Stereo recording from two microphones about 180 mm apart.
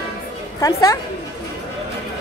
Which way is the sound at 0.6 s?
20° left (ahead or behind).